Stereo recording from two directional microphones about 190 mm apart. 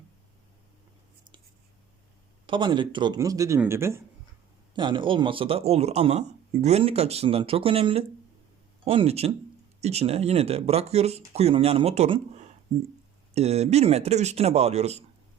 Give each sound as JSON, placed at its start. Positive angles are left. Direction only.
{"t": 2.5, "sound": "speech", "side_deg": -25}
{"t": 4.7, "sound": "speech", "side_deg": -25}